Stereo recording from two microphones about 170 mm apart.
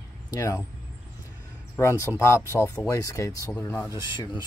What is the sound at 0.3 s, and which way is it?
Speech, 20° left (ahead or behind).